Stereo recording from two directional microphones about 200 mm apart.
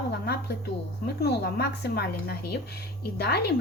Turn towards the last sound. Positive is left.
turn(degrees=55)  # may be behind; listen again after turning